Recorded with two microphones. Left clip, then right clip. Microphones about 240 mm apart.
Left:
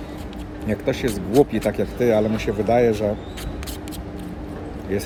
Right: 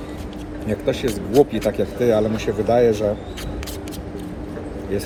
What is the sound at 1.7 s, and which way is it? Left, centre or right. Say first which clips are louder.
Speech: right 1 dB; left.